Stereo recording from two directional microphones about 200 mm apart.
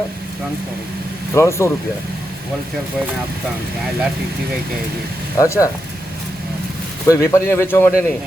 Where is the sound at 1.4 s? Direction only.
15° left (ahead or behind).